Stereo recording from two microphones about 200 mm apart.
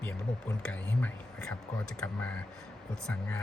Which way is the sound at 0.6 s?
5° left (ahead or behind).